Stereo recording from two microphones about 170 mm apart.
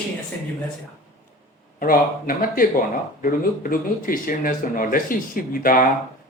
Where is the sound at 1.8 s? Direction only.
55° left (ahead or behind).